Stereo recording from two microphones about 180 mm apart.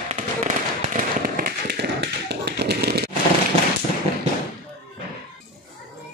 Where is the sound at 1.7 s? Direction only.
70° right (ahead or behind).